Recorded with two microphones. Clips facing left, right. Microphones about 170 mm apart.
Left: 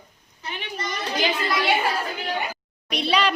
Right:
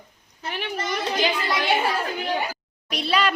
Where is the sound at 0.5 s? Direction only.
70° right (ahead or behind).